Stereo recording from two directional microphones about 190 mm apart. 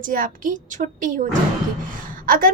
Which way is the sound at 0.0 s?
45° right (ahead or behind).